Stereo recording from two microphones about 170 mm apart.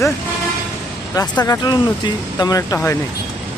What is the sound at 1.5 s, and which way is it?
Speech, 25° left (ahead or behind).